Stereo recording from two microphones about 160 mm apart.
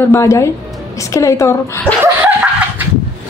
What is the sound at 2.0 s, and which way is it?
Laughter, 10° right (ahead or behind).